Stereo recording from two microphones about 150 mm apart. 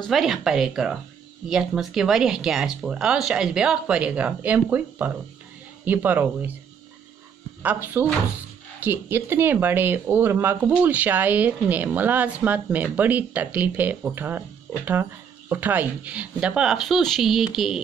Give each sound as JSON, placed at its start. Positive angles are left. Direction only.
{"t": 0.0, "sound": "speech", "side_deg": 0}
{"t": 7.6, "sound": "speech", "side_deg": -10}